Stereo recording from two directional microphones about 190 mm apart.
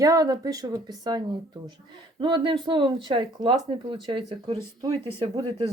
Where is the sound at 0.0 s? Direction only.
20° right (ahead or behind).